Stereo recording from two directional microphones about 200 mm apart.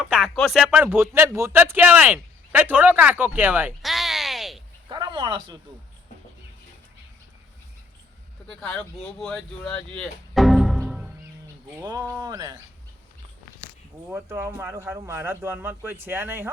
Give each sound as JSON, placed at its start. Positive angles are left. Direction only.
{"t": 0.0, "sound": "speech", "side_deg": 0}
{"t": 4.9, "sound": "speech", "side_deg": -25}
{"t": 8.4, "sound": "speech", "side_deg": 5}
{"t": 11.8, "sound": "speech", "side_deg": -20}
{"t": 14.1, "sound": "speech", "side_deg": -10}